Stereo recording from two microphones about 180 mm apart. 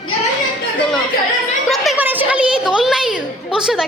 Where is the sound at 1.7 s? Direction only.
Centre (ahead or behind).